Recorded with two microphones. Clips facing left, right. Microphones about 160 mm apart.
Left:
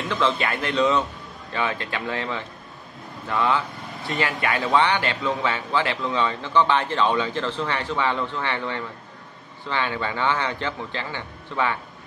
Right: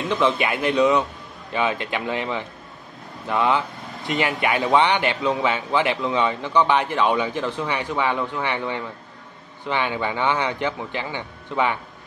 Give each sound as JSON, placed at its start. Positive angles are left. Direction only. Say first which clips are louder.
{"t": 0.1, "sound": "a man's voice", "louder": "right 3 dB", "side_deg": -15}